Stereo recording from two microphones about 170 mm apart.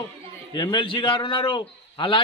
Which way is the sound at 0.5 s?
25° left (ahead or behind).